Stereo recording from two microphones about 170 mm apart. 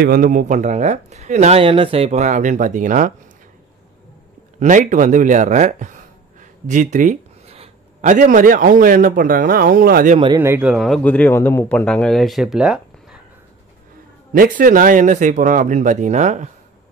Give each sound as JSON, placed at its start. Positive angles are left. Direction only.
{"t": 0.0, "sound": "speech", "side_deg": -60}
{"t": 4.6, "sound": "speech", "side_deg": -50}
{"t": 10.4, "sound": "speech", "side_deg": -10}
{"t": 14.3, "sound": "speech", "side_deg": -55}